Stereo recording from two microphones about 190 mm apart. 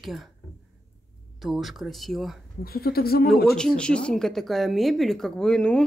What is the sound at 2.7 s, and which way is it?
Speech, 55° left (ahead or behind).